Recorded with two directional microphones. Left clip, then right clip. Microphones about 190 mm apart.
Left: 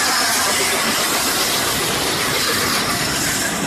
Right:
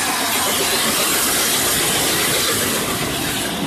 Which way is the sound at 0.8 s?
50° right (ahead or behind).